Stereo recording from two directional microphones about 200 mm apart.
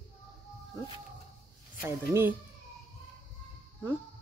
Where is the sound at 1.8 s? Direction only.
10° right (ahead or behind).